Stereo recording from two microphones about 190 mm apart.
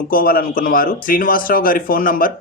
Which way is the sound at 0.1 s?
50° left (ahead or behind).